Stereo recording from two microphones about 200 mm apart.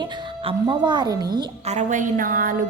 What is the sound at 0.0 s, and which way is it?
A woman's voice, 20° right (ahead or behind).